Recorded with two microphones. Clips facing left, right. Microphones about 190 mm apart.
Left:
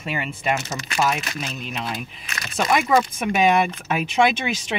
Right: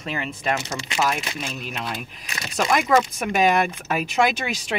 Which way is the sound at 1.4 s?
Centre (ahead or behind).